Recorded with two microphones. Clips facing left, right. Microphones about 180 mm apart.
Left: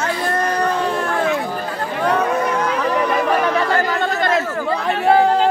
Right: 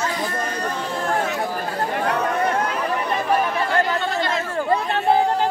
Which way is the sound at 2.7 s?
90° left.